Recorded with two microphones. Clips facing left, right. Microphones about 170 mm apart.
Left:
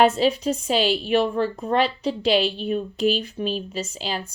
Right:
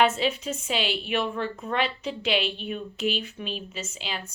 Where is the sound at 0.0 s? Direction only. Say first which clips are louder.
Left 5 dB; 35° left (ahead or behind).